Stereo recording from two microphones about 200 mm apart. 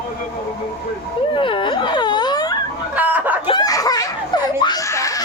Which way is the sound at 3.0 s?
10° right (ahead or behind).